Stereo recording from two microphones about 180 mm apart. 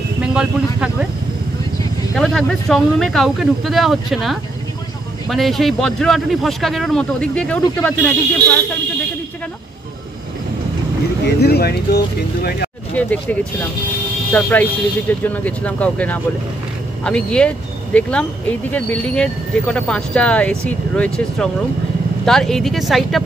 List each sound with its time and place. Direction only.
0.2 s a sound: 5° right (ahead or behind)
2.1 s speech: centre (ahead or behind)
11.2 s speech: 65° left (ahead or behind)
12.9 s speech: 10° left (ahead or behind)